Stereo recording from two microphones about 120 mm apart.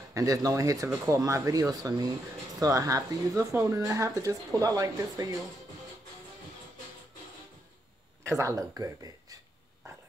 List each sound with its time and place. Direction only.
0.1 s speech: 30° right (ahead or behind)
8.4 s speech: 25° right (ahead or behind)